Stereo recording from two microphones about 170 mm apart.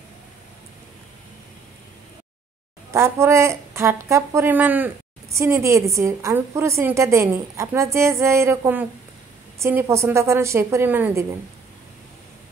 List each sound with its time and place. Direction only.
2.9 s a woman's voice: 15° right (ahead or behind)